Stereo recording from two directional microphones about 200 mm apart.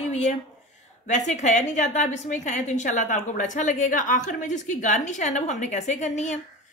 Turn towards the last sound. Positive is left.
turn(degrees=35)  # may be behind; listen again after turning